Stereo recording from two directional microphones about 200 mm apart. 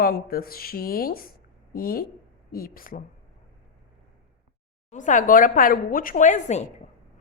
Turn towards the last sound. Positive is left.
turn(degrees=35)  # may be behind; listen again after turning